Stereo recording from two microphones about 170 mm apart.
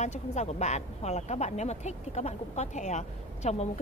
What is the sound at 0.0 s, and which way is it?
Speech, 40° left (ahead or behind).